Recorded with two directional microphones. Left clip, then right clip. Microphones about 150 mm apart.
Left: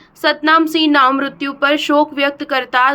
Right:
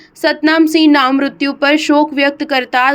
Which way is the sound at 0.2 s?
25° right (ahead or behind).